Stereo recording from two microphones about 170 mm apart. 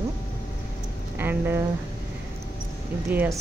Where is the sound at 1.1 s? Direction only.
10° right (ahead or behind).